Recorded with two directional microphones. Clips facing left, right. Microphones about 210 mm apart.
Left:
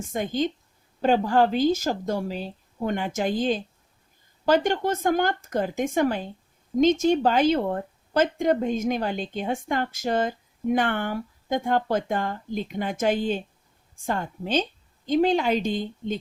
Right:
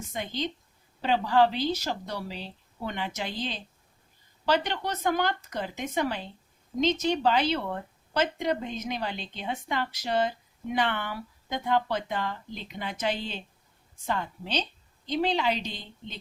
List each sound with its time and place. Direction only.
0.0 s a woman's voice: 50° left (ahead or behind)